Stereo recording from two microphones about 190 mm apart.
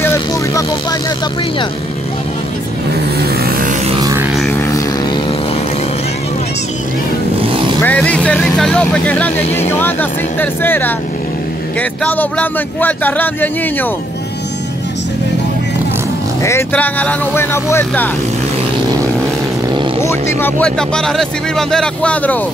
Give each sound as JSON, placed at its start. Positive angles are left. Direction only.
{"t": 0.0, "sound": "vehicle", "side_deg": 15}
{"t": 3.2, "sound": "vehicle", "side_deg": -55}
{"t": 4.0, "sound": "music", "side_deg": -15}
{"t": 4.6, "sound": "a sound", "side_deg": 15}
{"t": 7.4, "sound": "vehicle", "side_deg": -30}
{"t": 7.8, "sound": "speech", "side_deg": 5}
{"t": 16.4, "sound": "speech", "side_deg": 10}
{"t": 20.0, "sound": "speech", "side_deg": 15}